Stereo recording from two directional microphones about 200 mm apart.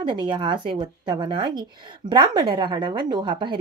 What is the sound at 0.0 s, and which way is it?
Speech, 25° right (ahead or behind).